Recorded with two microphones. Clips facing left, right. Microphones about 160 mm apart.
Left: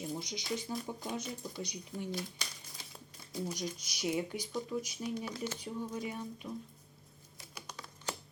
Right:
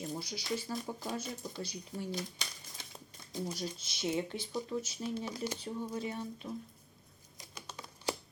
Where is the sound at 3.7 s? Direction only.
25° right (ahead or behind).